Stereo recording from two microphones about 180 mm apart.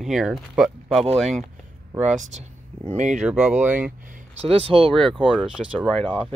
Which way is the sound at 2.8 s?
40° right (ahead or behind).